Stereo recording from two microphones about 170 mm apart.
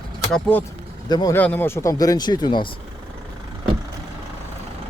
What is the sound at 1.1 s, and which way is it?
Speech, 25° left (ahead or behind).